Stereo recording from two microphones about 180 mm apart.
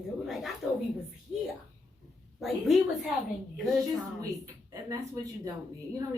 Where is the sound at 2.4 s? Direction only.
Centre (ahead or behind).